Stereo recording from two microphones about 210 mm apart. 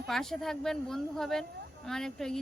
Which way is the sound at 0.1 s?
Centre (ahead or behind).